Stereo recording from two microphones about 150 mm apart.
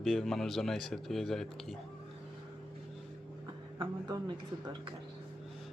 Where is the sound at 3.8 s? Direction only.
25° right (ahead or behind).